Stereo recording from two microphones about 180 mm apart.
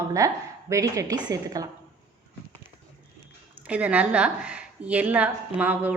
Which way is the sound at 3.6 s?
5° right (ahead or behind).